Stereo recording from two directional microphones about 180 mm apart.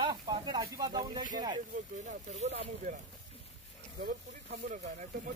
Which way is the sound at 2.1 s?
40° right (ahead or behind).